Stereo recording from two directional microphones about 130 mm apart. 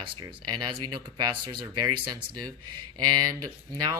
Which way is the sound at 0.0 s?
35° right (ahead or behind).